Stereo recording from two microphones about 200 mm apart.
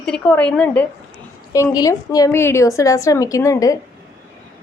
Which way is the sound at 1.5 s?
15° left (ahead or behind).